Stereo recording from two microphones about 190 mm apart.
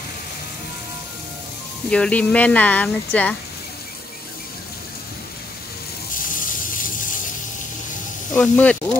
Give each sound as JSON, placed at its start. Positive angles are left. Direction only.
{"t": 1.9, "sound": "speech", "side_deg": 5}
{"t": 6.1, "sound": "ratchet", "side_deg": 45}
{"t": 8.3, "sound": "speech", "side_deg": 5}